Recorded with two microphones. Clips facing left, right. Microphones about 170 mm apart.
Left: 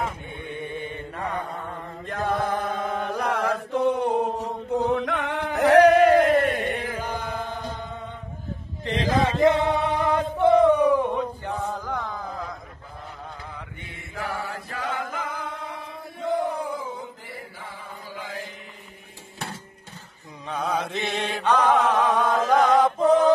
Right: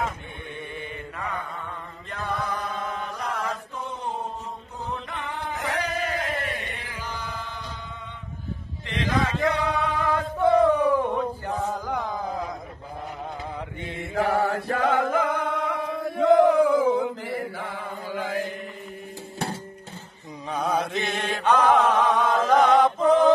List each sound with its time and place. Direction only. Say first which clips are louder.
0.5 s mantra: left 4 dB; 20° left (ahead or behind)
1.1 s chant: left 3 dB; 35° left (ahead or behind); by 7.7 s 50° left (ahead or behind)
8.8 s male singing: left 3 dB; 30° left (ahead or behind)
11.1 s chant: right 1 dB; 5° right (ahead or behind)
13.6 s mantra: right 7 dB; 25° right (ahead or behind)
14.1 s chant: right 9 dB; 50° right (ahead or behind)
20.4 s mantra: right 1 dB; 10° right (ahead or behind)
21.1 s mantra: even; centre (ahead or behind)
22.7 s a sound: even; centre (ahead or behind)